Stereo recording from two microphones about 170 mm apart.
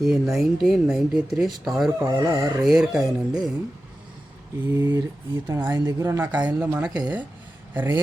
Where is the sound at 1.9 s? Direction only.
20° right (ahead or behind).